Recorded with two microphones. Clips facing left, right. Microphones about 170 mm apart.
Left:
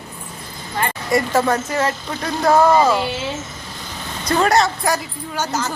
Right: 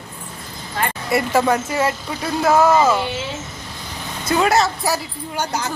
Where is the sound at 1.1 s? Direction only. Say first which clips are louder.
Even; 10° right (ahead or behind).